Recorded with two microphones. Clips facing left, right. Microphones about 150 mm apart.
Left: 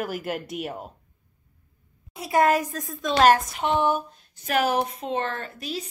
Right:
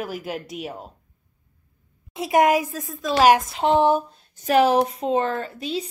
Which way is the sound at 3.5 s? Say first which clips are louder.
Right 5 dB; 30° right (ahead or behind).